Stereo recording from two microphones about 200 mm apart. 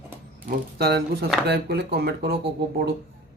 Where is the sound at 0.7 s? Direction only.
50° right (ahead or behind).